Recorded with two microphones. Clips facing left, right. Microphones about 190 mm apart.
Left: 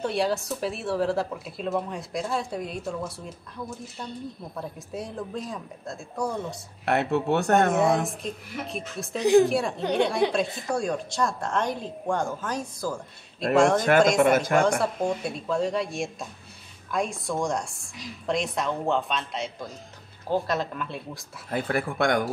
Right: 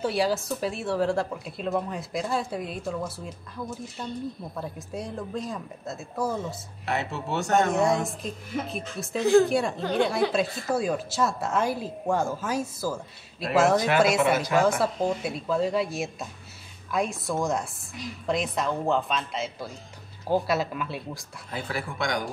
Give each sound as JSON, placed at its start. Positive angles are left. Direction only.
{"t": 0.0, "sound": "speech", "side_deg": 0}
{"t": 6.9, "sound": "speech", "side_deg": 60}
{"t": 7.7, "sound": "speech", "side_deg": 0}
{"t": 9.2, "sound": "speech", "side_deg": 15}
{"t": 9.5, "sound": "speech", "side_deg": 0}
{"t": 13.7, "sound": "speech", "side_deg": 50}
{"t": 14.6, "sound": "speech", "side_deg": -5}
{"t": 21.5, "sound": "speech", "side_deg": 55}